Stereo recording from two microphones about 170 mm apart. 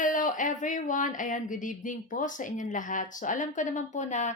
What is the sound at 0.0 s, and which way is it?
Speech, 50° left (ahead or behind).